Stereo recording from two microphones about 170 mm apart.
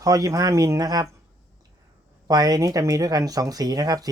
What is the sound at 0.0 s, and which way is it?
Speech, 20° right (ahead or behind).